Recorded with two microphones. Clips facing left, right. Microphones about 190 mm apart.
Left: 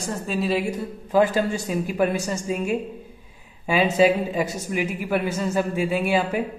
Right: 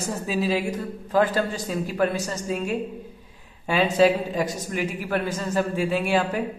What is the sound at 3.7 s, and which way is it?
Speech, 10° left (ahead or behind).